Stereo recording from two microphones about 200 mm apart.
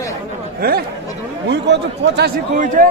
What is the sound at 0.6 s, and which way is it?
Speech, 50° right (ahead or behind).